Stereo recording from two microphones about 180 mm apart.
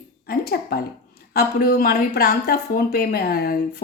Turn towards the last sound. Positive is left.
turn(degrees=60)  # may be behind; listen again after turning